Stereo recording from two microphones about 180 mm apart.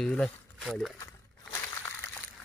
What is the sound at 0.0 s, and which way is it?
Speech, 5° left (ahead or behind).